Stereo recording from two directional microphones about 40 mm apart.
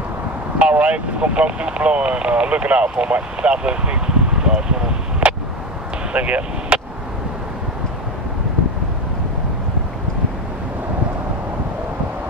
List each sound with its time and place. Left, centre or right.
0.6 s speech: right
6.1 s speech: right